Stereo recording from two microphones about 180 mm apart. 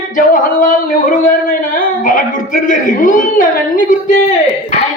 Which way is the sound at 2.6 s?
45° left (ahead or behind).